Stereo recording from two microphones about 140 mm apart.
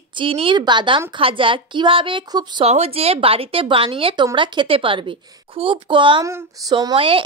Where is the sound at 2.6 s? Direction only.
50° right (ahead or behind).